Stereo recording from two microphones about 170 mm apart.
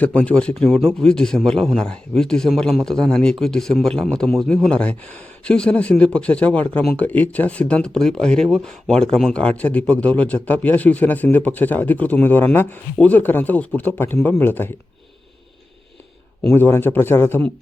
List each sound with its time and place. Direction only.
0.0 s a man's voice: 10° left (ahead or behind)
16.4 s speech: 10° left (ahead or behind)